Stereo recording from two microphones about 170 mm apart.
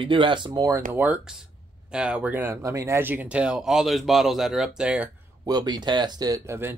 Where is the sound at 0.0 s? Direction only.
30° right (ahead or behind).